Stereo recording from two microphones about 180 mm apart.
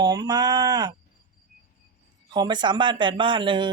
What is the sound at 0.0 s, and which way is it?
Speech, 20° right (ahead or behind).